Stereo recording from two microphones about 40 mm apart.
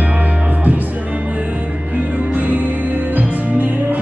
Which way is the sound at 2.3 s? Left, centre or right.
Right.